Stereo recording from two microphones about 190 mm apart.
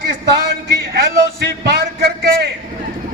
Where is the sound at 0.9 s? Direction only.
55° right (ahead or behind).